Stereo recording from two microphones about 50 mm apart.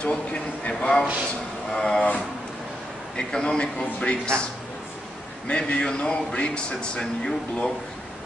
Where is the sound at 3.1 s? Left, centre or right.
Centre.